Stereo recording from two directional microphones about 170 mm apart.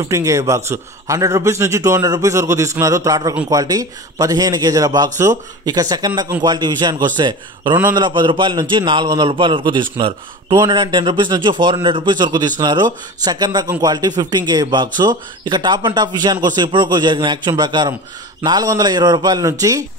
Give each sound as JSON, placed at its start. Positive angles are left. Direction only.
{"t": 0.0, "sound": "a man's voice", "side_deg": -20}